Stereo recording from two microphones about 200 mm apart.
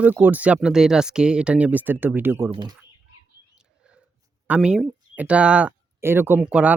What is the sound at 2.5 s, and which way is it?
Speech, 25° right (ahead or behind).